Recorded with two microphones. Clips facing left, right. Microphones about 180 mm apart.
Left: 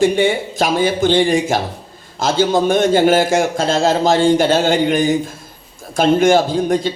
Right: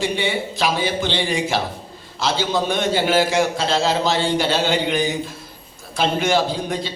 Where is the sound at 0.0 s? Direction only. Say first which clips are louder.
Left 8 dB; 50° left (ahead or behind).